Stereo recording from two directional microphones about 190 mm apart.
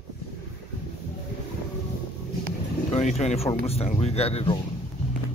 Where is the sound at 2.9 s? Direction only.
35° left (ahead or behind).